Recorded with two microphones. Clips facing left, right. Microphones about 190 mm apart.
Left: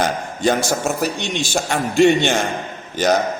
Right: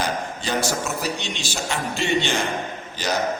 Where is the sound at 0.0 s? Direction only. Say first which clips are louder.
Left 7 dB; 50° left (ahead or behind).